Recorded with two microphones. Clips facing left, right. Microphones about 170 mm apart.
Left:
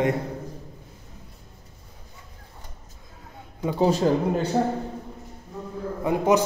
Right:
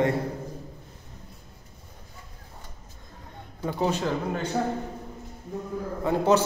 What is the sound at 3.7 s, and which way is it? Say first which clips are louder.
Speech: left 6 dB; 35° left (ahead or behind).